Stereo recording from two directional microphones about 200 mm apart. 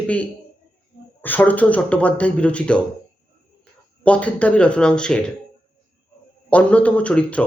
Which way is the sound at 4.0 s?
5° left (ahead or behind).